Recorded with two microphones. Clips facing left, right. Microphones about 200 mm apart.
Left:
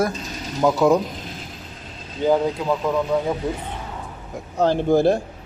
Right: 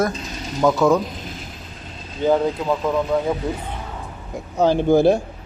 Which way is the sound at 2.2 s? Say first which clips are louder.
Right 1 dB; 15° left (ahead or behind).